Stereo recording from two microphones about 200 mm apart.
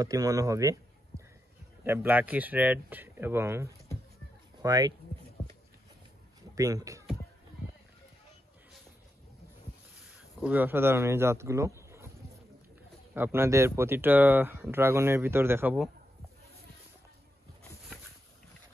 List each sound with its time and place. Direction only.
0.0 s speech: 15° right (ahead or behind)
6.5 s speech: 15° right (ahead or behind)
10.1 s speech: 5° right (ahead or behind)
13.1 s speech: 10° right (ahead or behind)